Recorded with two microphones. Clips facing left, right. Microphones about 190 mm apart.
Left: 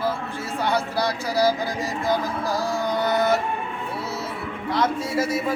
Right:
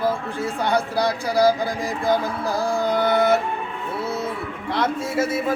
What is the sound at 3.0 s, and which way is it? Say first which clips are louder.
Music: right 2 dB; 60° right (ahead or behind).